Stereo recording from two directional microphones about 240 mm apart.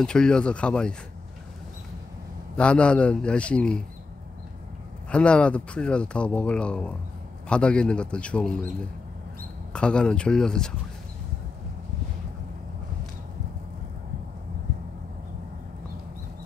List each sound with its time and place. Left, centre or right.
0.0 s speech: centre
2.5 s speech: centre
5.1 s speech: centre
9.7 s speech: centre